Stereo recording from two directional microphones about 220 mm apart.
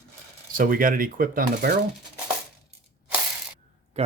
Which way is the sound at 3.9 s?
30° right (ahead or behind).